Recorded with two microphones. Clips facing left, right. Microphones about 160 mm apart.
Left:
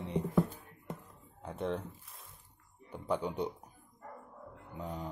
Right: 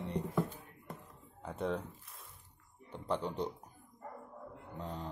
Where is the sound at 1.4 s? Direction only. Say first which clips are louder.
Even; centre (ahead or behind).